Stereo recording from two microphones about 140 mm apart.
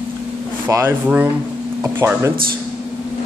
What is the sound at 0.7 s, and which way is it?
Speech, 20° right (ahead or behind).